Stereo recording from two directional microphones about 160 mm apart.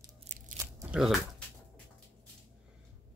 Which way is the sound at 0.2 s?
50° right (ahead or behind).